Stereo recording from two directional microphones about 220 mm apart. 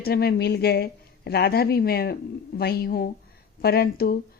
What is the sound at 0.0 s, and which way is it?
Speech, 45° left (ahead or behind).